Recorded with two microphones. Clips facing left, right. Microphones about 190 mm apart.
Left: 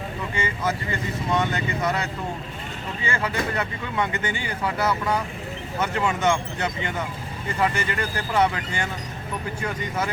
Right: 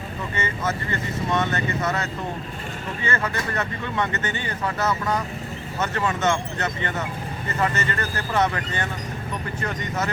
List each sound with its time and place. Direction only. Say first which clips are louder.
0.3 s speech: even; 10° left (ahead or behind)